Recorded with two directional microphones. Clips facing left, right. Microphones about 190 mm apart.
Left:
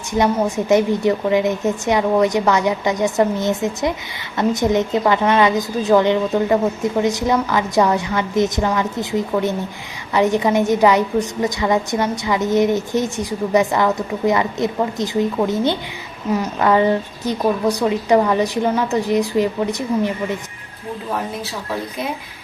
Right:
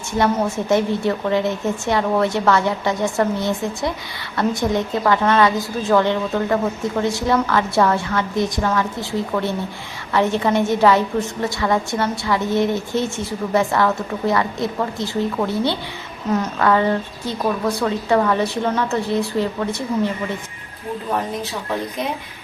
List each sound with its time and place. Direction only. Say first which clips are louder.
0.1 s a woman's voice: left 2 dB; 15° left (ahead or behind)